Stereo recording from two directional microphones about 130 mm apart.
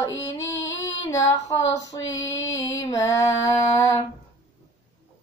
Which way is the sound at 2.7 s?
25° left (ahead or behind).